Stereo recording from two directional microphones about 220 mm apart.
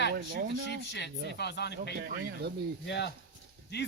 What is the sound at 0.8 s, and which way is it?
Speech, 50° left (ahead or behind).